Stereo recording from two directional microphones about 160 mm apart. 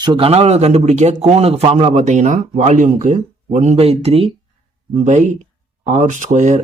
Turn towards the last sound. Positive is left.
turn(degrees=-50)  # may be behind; listen again after turning